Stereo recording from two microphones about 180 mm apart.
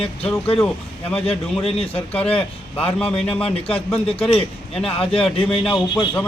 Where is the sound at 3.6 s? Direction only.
30° left (ahead or behind).